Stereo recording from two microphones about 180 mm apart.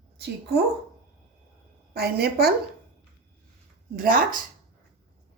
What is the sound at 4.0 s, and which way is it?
Speech, 50° right (ahead or behind).